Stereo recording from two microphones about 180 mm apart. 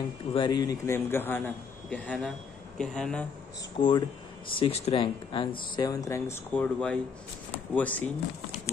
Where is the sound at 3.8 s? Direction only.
30° left (ahead or behind); by 8.1 s 10° left (ahead or behind).